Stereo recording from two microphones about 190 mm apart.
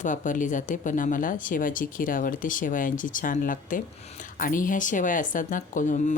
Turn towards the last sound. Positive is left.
turn(degrees=40)  # may be behind; listen again after turning